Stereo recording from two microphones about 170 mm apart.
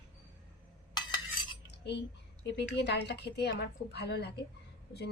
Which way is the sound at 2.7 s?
80° left.